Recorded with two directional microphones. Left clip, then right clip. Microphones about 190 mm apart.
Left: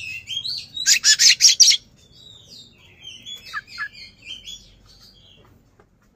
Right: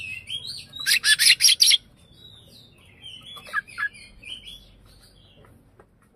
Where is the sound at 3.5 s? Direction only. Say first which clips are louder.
Right 4 dB; 35° right (ahead or behind).